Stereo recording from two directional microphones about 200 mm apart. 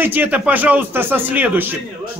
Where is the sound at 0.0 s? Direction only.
10° right (ahead or behind).